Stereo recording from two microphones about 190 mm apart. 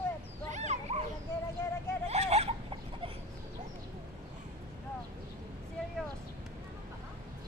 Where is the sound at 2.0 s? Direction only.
35° right (ahead or behind).